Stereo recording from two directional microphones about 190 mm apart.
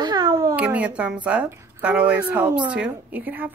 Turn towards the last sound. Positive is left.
turn(degrees=-10)  # may be behind; listen again after turning